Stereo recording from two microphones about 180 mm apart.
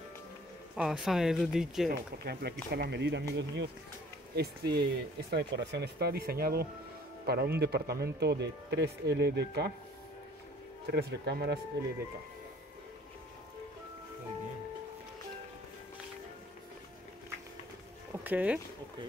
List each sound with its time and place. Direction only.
0.7 s speech: centre (ahead or behind)
1.9 s speech: 60° right (ahead or behind)
4.4 s speech: 60° right (ahead or behind)
10.9 s speech: 65° right (ahead or behind)
18.1 s a sound: 10° right (ahead or behind)